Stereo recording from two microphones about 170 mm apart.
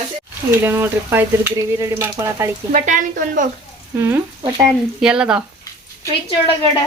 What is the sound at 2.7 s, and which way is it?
Speech, 50° right (ahead or behind).